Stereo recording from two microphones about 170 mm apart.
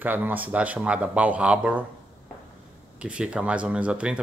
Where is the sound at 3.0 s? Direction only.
5° right (ahead or behind).